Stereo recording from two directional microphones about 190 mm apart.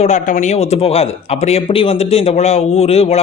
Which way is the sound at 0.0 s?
40° left (ahead or behind).